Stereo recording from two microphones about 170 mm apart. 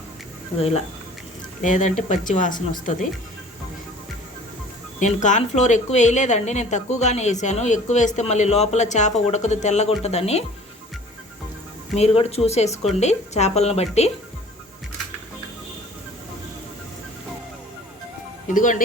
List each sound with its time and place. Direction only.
1.6 s a woman's voice: 45° left (ahead or behind)
4.9 s a woman's voice: 45° left (ahead or behind)
11.9 s speech: 40° left (ahead or behind)
18.4 s a woman's voice: 50° left (ahead or behind)